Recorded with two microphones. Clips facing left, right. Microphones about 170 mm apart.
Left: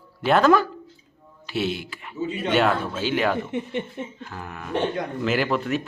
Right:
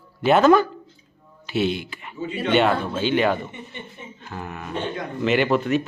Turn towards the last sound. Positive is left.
turn(degrees=0)  # may be behind; listen again after turning